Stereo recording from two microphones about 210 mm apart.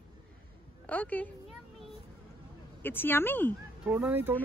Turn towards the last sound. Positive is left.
turn(degrees=-10)  # may be behind; listen again after turning